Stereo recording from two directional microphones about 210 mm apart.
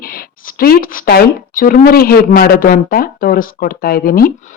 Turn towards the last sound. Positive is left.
turn(degrees=45)  # may be behind; listen again after turning